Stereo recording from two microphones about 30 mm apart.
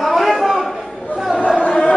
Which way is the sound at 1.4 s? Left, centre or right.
Left.